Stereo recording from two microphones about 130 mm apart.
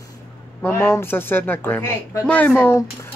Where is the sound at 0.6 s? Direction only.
15° left (ahead or behind).